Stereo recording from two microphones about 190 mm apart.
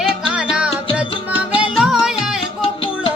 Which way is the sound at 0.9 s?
5° right (ahead or behind).